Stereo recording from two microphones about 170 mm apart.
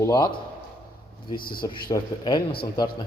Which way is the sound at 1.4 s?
60° left (ahead or behind).